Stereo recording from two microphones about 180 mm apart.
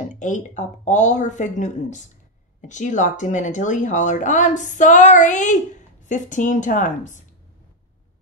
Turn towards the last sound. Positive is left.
turn(degrees=45)  # may be behind; listen again after turning